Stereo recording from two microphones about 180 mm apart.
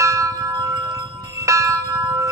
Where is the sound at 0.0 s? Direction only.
15° right (ahead or behind).